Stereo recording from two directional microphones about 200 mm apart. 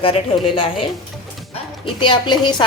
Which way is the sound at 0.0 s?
25° left (ahead or behind).